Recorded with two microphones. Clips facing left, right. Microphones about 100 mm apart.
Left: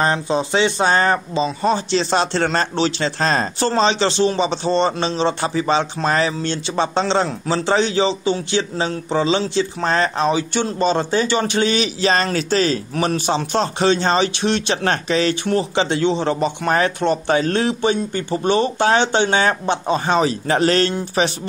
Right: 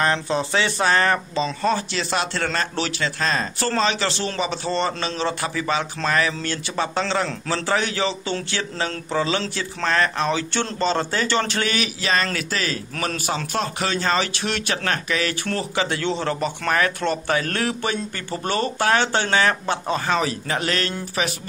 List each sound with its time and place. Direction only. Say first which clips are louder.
0.0 s a man's voice: left 3 dB; 20° left (ahead or behind)